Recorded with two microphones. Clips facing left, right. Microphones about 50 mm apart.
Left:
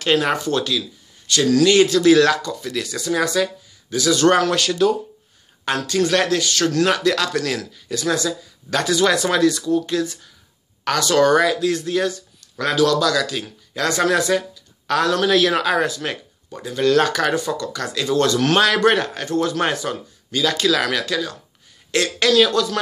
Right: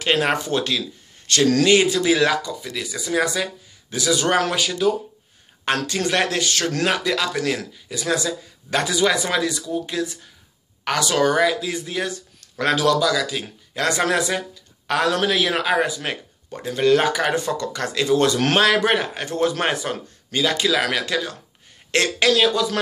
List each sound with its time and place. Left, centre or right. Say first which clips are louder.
0.0 s speech: left 2 dB; right
1.7 s speech: left 3 dB; right
5.9 s speech: left 8 dB; right
6.9 s speech: left 3 dB; centre
12.1 s speech: left 1 dB; right
13.0 s speech: left 1 dB; centre
13.7 s speech: left 2 dB; right
15.3 s speech: left 3 dB; centre
17.4 s speech: even; right
18.6 s speech: left 2 dB; centre
19.1 s speech: left 1 dB; right
20.8 s speech: left 1 dB; right